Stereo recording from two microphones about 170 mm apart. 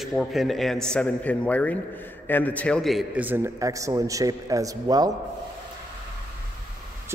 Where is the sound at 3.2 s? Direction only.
15° right (ahead or behind).